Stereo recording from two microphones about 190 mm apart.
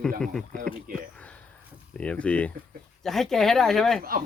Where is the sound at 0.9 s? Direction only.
50° right (ahead or behind).